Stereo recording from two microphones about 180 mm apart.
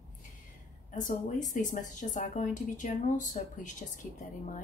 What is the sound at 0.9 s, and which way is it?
A woman's voice, 45° left (ahead or behind).